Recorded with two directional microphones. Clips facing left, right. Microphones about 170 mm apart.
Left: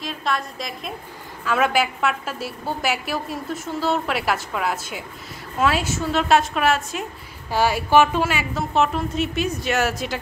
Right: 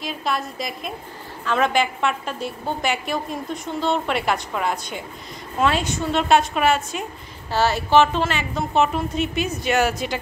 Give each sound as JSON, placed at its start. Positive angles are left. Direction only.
{"t": 0.0, "sound": "a woman's voice", "side_deg": 0}
{"t": 7.5, "sound": "a woman's voice", "side_deg": 10}